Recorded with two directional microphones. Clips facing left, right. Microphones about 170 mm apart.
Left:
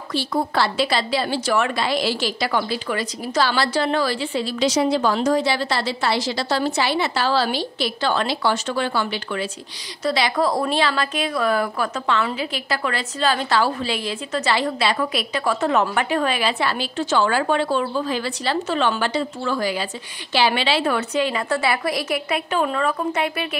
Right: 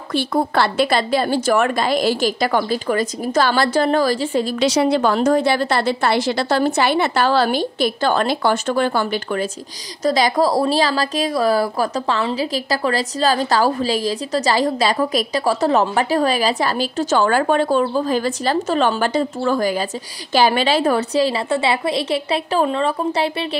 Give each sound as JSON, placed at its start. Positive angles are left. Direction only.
{"t": 0.1, "sound": "a woman's voice", "side_deg": -55}
{"t": 4.6, "sound": "a woman's voice", "side_deg": -65}